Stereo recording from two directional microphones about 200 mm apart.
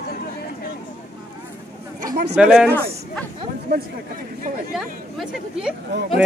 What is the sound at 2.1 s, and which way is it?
Speech, 55° right (ahead or behind).